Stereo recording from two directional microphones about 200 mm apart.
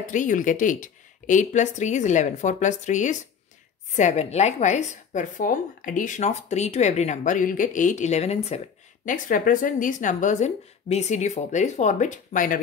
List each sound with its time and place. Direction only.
0.0 s a woman's voice: 40° left (ahead or behind)
9.0 s a woman's voice: 40° left (ahead or behind)